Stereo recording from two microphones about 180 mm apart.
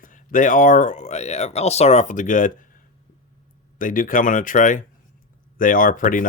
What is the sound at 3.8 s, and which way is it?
Speech, 50° left (ahead or behind).